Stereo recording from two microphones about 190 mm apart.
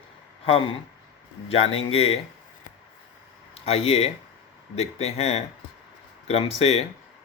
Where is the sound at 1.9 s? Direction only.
30° left (ahead or behind).